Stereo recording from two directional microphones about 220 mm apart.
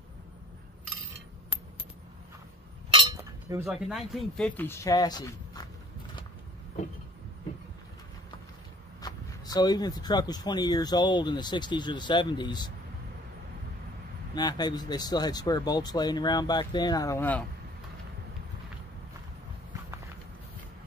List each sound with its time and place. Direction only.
3.2 s chink: 10° right (ahead or behind)
3.6 s a man's voice: centre (ahead or behind); by 5.7 s 15° left (ahead or behind)
9.0 s speech: 15° left (ahead or behind)
14.3 s speech: 20° left (ahead or behind)